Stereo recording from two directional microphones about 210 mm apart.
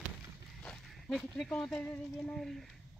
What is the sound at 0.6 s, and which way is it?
Speech, centre (ahead or behind).